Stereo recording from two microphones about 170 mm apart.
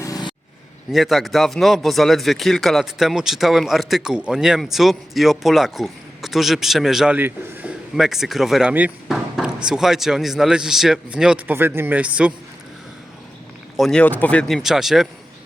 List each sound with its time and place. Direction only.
0.0 s vehicle: 25° left (ahead or behind)
0.9 s a man's voice: centre (ahead or behind)
13.7 s a man's voice: centre (ahead or behind)